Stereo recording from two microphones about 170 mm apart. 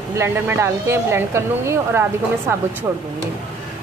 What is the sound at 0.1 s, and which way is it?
A woman's voice, 15° right (ahead or behind).